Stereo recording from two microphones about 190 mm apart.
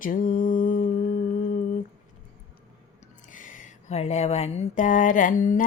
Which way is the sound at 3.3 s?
45° left (ahead or behind).